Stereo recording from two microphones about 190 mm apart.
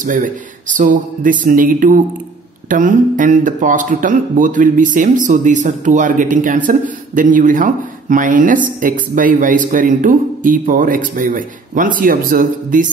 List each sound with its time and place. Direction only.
0.0 s speech: 45° right (ahead or behind)